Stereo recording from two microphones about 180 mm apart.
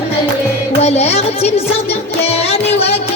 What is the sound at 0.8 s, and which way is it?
Music, 35° left (ahead or behind).